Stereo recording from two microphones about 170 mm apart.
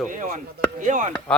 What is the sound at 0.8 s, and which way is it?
Speech, 45° right (ahead or behind).